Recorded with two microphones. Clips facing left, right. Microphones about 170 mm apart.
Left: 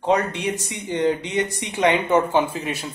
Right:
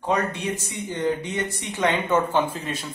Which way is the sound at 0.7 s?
70° left (ahead or behind).